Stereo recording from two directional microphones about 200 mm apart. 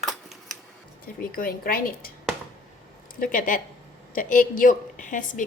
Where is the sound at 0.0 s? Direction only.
Centre (ahead or behind).